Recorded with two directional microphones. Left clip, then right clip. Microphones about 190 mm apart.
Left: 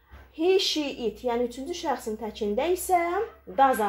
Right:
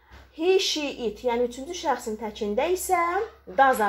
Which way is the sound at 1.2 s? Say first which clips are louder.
Right 3 dB; 25° left (ahead or behind).